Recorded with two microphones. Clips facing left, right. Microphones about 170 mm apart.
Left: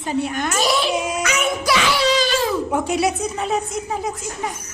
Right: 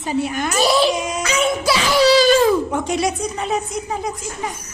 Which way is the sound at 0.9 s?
10° left (ahead or behind).